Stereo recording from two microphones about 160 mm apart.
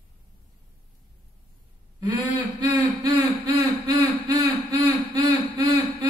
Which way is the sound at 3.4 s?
25° right (ahead or behind).